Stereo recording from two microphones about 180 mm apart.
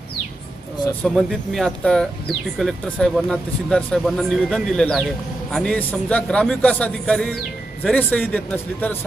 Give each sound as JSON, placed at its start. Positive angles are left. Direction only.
{"t": 1.0, "sound": "speech", "side_deg": 0}